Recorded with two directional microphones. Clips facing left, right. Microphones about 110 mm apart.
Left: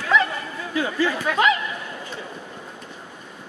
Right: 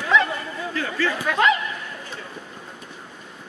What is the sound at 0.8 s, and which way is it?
Speech, 15° left (ahead or behind).